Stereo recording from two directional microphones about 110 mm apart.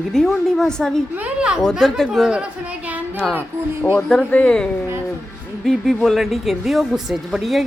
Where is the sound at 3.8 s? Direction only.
20° left (ahead or behind).